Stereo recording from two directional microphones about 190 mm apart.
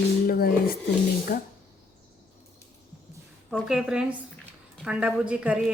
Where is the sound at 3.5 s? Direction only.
5° right (ahead or behind).